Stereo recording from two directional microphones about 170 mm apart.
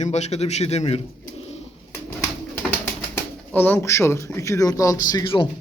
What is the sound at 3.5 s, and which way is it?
Speech, 10° left (ahead or behind).